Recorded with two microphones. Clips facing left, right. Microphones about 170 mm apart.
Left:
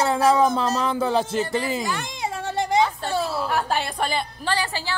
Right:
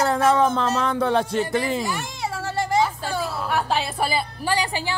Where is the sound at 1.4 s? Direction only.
10° right (ahead or behind).